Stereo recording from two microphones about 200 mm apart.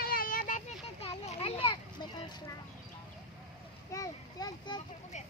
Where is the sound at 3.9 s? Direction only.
15° left (ahead or behind).